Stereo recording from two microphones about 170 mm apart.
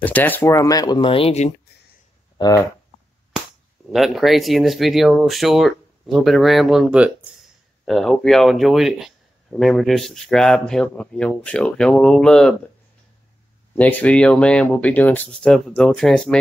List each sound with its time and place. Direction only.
0.0 s speech: 10° left (ahead or behind); by 1.5 s 35° left (ahead or behind)
2.3 s speech: 25° left (ahead or behind)
3.9 s speech: centre (ahead or behind)
13.7 s speech: 10° left (ahead or behind)